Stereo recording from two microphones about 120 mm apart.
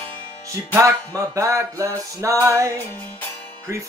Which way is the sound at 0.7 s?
25° right (ahead or behind).